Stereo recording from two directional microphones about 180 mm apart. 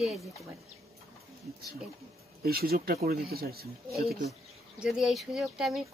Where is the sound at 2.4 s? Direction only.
60° right (ahead or behind).